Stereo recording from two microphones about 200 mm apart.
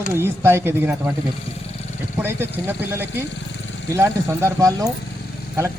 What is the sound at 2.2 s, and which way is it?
A man's voice, 10° right (ahead or behind).